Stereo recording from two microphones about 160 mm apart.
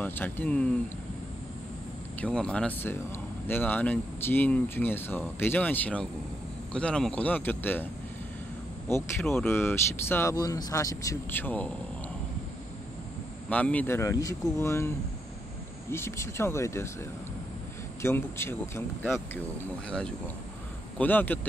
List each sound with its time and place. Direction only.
0.0 s speech: 10° left (ahead or behind)
2.2 s speech: 5° left (ahead or behind)
8.9 s speech: 15° left (ahead or behind)
13.5 s speech: 10° left (ahead or behind)
15.9 s speech: 15° left (ahead or behind)
18.0 s speech: 15° left (ahead or behind)